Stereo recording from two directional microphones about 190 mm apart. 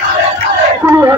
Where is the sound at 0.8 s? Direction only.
15° right (ahead or behind).